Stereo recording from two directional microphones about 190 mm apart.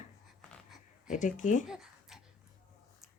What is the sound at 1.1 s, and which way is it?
Speech, 40° left (ahead or behind).